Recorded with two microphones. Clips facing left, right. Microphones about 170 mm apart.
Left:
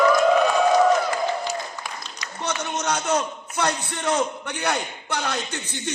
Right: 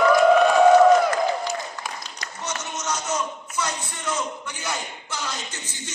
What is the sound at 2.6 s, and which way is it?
A man's voice, 60° left (ahead or behind).